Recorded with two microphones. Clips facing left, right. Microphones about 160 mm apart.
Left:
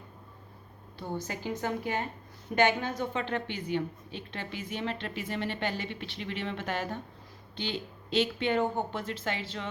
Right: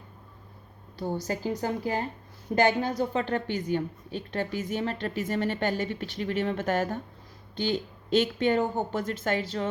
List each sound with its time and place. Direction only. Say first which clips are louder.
0.9 s a woman's voice: right 5 dB; 35° right (ahead or behind)